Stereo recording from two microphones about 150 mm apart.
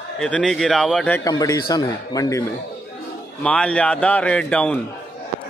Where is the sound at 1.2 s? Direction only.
25° left (ahead or behind).